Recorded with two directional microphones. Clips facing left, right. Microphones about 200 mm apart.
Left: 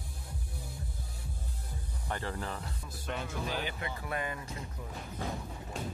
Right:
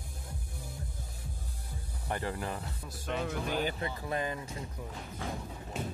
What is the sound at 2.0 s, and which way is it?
Speech, 15° right (ahead or behind).